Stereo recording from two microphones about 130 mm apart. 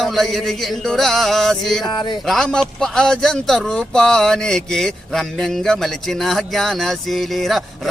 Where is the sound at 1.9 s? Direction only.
35° left (ahead or behind).